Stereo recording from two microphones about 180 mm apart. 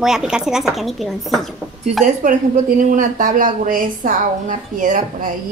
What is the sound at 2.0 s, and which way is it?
A woman's voice, 45° right (ahead or behind).